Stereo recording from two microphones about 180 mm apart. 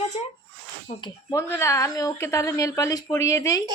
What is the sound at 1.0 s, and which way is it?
Speech, 20° left (ahead or behind).